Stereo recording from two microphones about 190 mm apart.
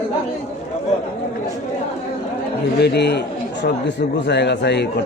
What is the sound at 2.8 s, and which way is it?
Speech, 60° left (ahead or behind).